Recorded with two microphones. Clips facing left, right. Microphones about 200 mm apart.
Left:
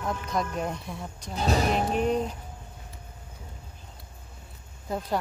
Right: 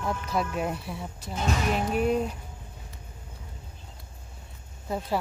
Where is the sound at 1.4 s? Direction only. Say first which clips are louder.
Left 2 dB; 35° left (ahead or behind).